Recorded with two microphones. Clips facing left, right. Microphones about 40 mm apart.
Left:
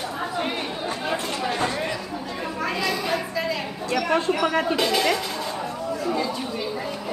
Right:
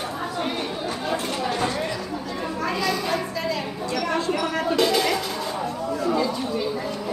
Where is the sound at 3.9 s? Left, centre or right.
Centre.